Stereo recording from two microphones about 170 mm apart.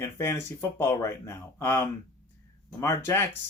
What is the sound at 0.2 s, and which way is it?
Speech, 15° left (ahead or behind).